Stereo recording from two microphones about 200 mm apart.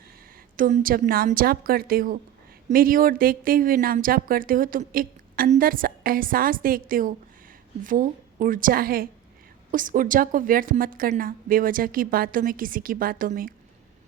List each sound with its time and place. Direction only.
0.5 s speech: 45° right (ahead or behind)